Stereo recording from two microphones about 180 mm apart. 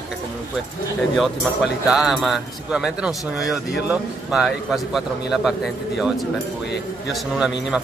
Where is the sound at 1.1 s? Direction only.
Centre (ahead or behind).